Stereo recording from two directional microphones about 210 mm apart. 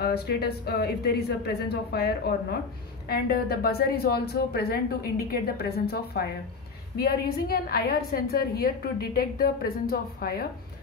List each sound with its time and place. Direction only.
0.0 s a woman's voice: 50° left (ahead or behind)